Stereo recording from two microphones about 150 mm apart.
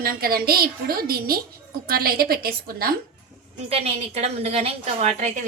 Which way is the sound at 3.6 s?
45° right (ahead or behind).